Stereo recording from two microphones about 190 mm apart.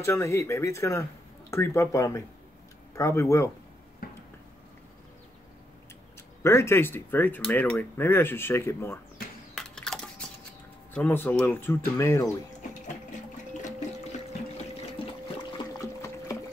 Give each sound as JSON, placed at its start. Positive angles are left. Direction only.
{"t": 0.0, "sound": "speech", "side_deg": 15}
{"t": 4.0, "sound": "a sound", "side_deg": 50}
{"t": 6.4, "sound": "speech", "side_deg": 15}
{"t": 9.6, "sound": "computer keyboard", "side_deg": 0}
{"t": 10.9, "sound": "speech", "side_deg": 10}
{"t": 15.5, "sound": "water", "side_deg": 15}